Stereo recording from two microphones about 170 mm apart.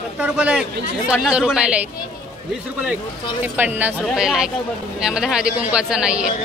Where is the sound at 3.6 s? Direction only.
10° right (ahead or behind).